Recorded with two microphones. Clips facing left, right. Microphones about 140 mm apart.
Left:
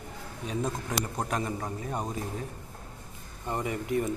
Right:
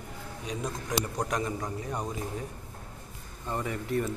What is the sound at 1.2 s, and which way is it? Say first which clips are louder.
Speech: even; 25° left (ahead or behind).